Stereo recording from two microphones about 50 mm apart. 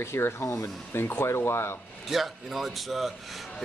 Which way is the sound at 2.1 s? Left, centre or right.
Centre.